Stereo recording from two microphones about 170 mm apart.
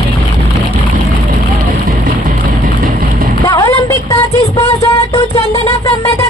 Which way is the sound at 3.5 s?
20° left (ahead or behind).